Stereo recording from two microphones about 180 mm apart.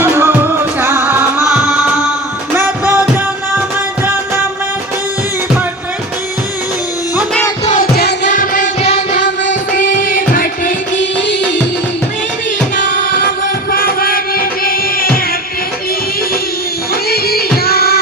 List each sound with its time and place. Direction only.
0.0 s music: 10° right (ahead or behind)
7.9 s music: 65° left (ahead or behind)
8.3 s music: 45° left (ahead or behind)
13.7 s music: 55° left (ahead or behind)
17.1 s music: 60° left (ahead or behind)